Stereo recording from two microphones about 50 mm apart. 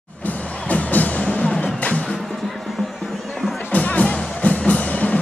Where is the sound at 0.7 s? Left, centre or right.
Left.